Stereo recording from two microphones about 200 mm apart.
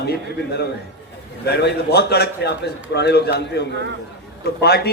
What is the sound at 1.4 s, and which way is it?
A man's voice, 55° left (ahead or behind).